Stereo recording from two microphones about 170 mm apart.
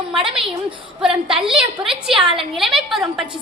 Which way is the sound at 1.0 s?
5° right (ahead or behind).